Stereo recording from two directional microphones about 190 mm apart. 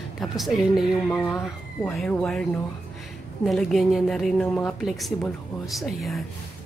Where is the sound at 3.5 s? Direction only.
Centre (ahead or behind).